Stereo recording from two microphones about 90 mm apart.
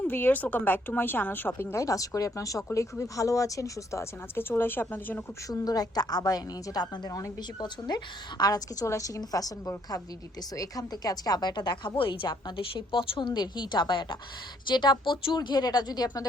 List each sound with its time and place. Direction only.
0.0 s speech: 20° left (ahead or behind)
1.7 s a woman's voice: 40° left (ahead or behind)
4.4 s speech: 25° left (ahead or behind)
5.5 s a woman's voice: 45° left (ahead or behind)